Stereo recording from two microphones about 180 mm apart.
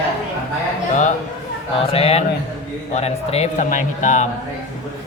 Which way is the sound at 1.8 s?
35° left (ahead or behind).